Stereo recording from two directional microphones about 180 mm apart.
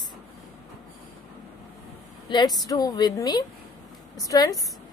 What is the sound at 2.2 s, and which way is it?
Speech, 25° left (ahead or behind).